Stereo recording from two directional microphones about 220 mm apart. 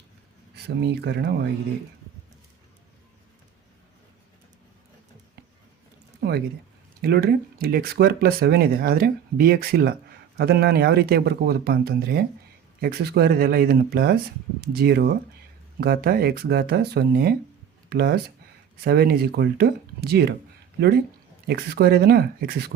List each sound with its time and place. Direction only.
0.5 s speech: 50° right (ahead or behind)
6.1 s a sound: 50° right (ahead or behind)
7.0 s speech: 45° right (ahead or behind)
21.4 s speech: 45° right (ahead or behind)